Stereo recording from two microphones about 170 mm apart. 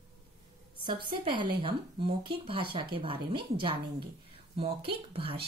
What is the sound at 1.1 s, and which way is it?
A woman's voice, 30° right (ahead or behind).